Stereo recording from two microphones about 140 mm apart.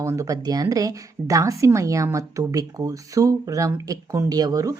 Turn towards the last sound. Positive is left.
turn(degrees=-25)  # may be behind; listen again after turning